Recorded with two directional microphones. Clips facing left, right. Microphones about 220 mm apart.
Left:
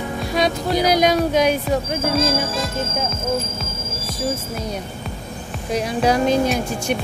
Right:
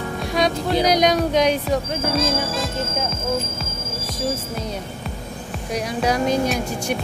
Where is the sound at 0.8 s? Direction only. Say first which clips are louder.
Left 2 dB; 5° left (ahead or behind).